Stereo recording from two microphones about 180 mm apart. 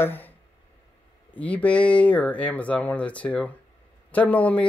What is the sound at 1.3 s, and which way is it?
Speech, 10° left (ahead or behind).